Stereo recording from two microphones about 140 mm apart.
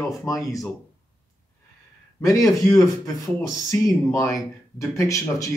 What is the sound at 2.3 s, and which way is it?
Speech, 25° left (ahead or behind).